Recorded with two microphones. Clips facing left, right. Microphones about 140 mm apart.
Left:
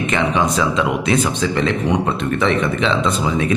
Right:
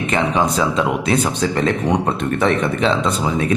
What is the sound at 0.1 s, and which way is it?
Speech, 35° right (ahead or behind).